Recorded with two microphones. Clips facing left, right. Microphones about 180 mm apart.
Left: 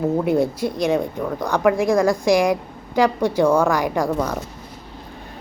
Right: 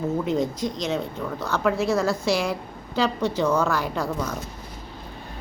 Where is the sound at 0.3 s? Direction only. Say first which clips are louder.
Left 5 dB; 10° left (ahead or behind).